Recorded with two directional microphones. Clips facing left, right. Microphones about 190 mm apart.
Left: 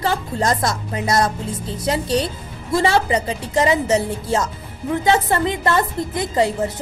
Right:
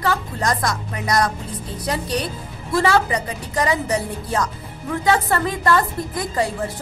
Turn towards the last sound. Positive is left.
turn(degrees=25)  # may be behind; listen again after turning